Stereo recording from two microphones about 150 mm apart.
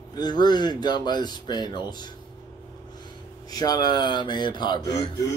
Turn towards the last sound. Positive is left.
turn(degrees=25)  # may be behind; listen again after turning